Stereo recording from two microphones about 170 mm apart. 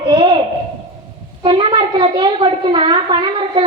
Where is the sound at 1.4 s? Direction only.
30° right (ahead or behind).